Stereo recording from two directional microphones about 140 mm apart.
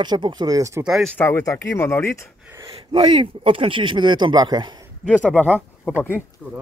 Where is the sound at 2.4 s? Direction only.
20° right (ahead or behind).